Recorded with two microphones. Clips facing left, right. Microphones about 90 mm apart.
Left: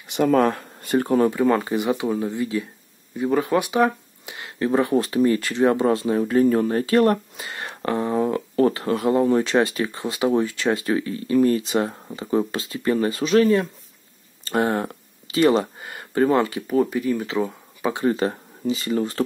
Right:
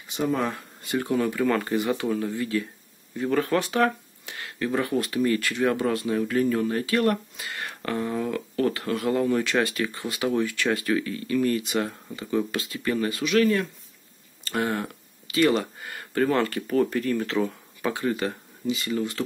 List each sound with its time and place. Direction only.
0.1 s speech: 65° left (ahead or behind); by 1.3 s 40° left (ahead or behind)
1.3 s speech: 20° left (ahead or behind)
17.9 s speech: 30° left (ahead or behind)